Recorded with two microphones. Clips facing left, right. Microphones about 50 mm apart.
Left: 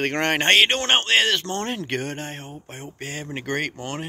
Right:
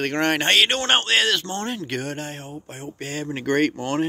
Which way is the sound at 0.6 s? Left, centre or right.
Left.